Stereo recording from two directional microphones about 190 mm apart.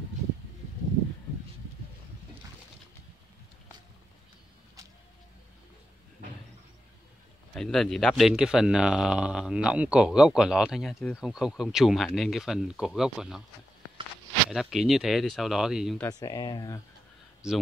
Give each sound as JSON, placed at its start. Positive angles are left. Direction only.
{"t": 7.5, "sound": "a man's voice", "side_deg": 0}
{"t": 14.5, "sound": "a man's voice", "side_deg": 0}
{"t": 16.0, "sound": "speech", "side_deg": 20}